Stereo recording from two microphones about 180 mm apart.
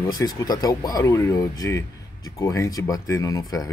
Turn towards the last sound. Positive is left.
turn(degrees=20)  # may be behind; listen again after turning